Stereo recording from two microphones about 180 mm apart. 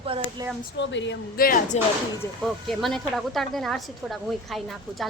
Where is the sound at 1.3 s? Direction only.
50° left (ahead or behind).